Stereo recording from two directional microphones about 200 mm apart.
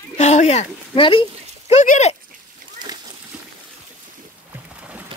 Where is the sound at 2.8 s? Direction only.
25° right (ahead or behind).